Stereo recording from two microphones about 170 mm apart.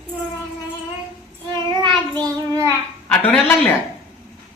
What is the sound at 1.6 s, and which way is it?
Child singing, 25° right (ahead or behind).